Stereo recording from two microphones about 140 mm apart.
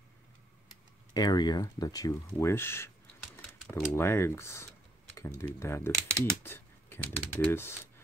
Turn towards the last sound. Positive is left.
turn(degrees=15)  # may be behind; listen again after turning